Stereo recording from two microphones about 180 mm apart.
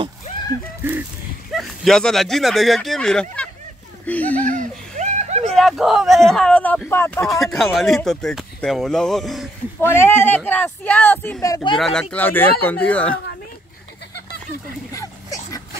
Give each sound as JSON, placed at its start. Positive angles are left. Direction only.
{"t": 1.5, "sound": "speech", "side_deg": 0}
{"t": 4.0, "sound": "a sound", "side_deg": 10}
{"t": 4.5, "sound": "chuckle", "side_deg": -40}
{"t": 5.4, "sound": "speech", "side_deg": 0}
{"t": 7.2, "sound": "speech", "side_deg": 0}
{"t": 9.8, "sound": "speech", "side_deg": 15}
{"t": 11.7, "sound": "speech", "side_deg": 5}
{"t": 14.9, "sound": "a sound", "side_deg": 20}